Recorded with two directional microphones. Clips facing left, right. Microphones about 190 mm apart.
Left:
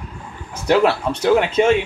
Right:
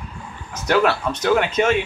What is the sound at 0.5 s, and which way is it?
Speech, 30° left (ahead or behind).